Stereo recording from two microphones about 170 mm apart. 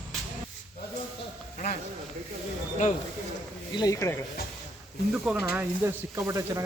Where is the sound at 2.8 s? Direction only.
50° left (ahead or behind).